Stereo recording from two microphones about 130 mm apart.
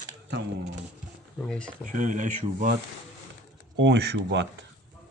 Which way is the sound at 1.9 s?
80° right.